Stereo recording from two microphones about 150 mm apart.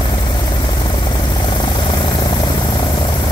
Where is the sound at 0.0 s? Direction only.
30° left (ahead or behind).